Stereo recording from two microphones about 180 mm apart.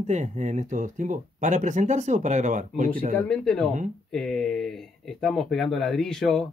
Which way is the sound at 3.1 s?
5° left (ahead or behind).